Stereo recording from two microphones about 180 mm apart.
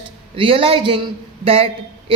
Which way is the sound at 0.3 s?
30° right (ahead or behind).